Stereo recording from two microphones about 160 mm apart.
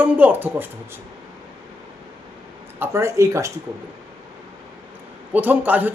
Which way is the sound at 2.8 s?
15° right (ahead or behind).